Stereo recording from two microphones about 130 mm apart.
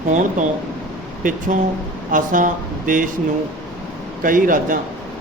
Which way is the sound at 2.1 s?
90° right.